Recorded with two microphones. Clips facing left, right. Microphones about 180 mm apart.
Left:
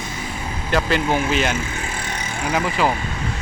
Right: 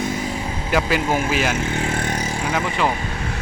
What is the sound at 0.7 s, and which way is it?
Speech, 5° right (ahead or behind).